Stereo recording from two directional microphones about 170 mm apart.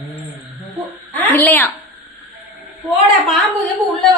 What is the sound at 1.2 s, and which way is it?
Speech, 10° left (ahead or behind).